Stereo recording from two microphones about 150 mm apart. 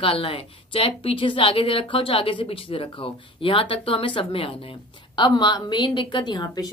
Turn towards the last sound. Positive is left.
turn(degrees=25)  # may be behind; listen again after turning